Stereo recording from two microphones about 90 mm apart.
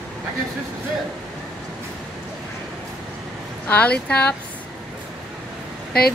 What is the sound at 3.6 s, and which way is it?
Speech, 15° left (ahead or behind).